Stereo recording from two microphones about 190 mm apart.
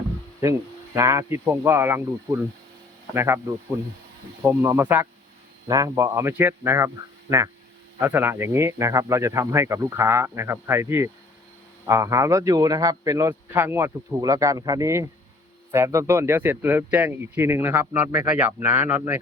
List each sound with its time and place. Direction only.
0.9 s speech: 15° right (ahead or behind)
4.4 s speech: 15° right (ahead or behind)